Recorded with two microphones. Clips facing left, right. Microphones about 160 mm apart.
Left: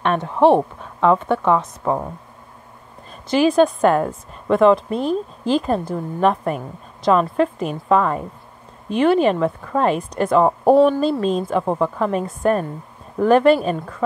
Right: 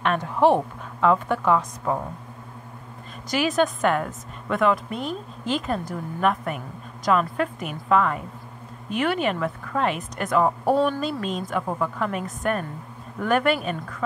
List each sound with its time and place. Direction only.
0.0 s a woman's voice: 25° left (ahead or behind)
3.3 s a woman's voice: 30° left (ahead or behind)